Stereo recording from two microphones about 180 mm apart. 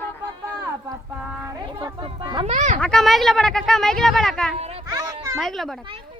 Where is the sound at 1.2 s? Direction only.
5° right (ahead or behind).